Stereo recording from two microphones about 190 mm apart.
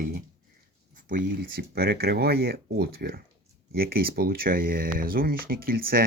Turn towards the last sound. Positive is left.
turn(degrees=-50)  # may be behind; listen again after turning